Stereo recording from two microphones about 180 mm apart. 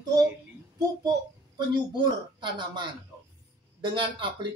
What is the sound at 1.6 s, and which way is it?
A woman's voice, 25° right (ahead or behind).